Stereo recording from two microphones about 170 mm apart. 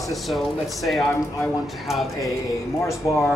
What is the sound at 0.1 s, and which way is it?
Speech, centre (ahead or behind).